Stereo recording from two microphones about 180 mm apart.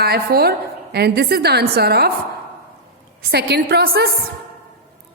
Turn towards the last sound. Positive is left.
turn(degrees=-60)  # may be behind; listen again after turning